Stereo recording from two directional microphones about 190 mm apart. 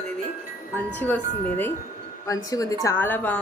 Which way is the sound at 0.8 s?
10° left (ahead or behind).